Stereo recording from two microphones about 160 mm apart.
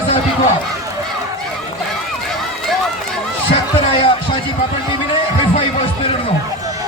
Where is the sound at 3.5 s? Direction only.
35° left (ahead or behind).